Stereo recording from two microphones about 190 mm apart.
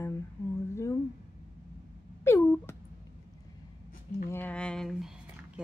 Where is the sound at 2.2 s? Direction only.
15° left (ahead or behind).